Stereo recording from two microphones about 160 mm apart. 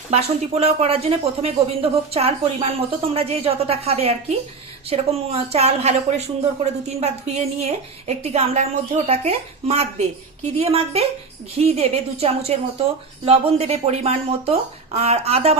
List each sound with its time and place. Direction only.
0.1 s speech: 40° right (ahead or behind)